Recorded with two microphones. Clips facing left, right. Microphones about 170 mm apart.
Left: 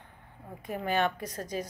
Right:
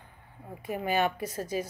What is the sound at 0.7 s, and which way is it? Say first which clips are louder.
A woman's voice: right 1 dB; 5° right (ahead or behind).